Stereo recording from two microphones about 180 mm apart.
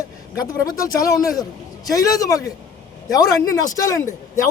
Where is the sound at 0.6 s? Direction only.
20° left (ahead or behind).